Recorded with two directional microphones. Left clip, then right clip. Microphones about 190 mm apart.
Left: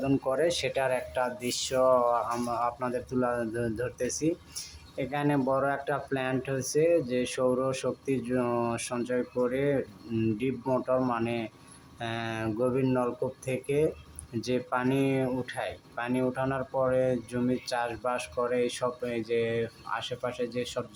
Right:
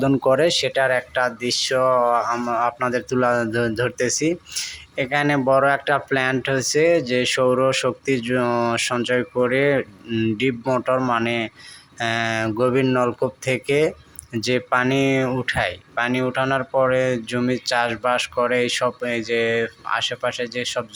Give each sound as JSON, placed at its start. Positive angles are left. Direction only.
{"t": 0.0, "sound": "speech", "side_deg": -30}